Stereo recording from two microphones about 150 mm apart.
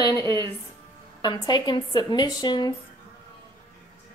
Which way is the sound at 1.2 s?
30° left (ahead or behind).